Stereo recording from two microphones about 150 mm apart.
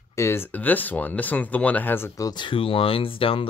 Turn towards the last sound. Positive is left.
turn(degrees=35)  # may be behind; listen again after turning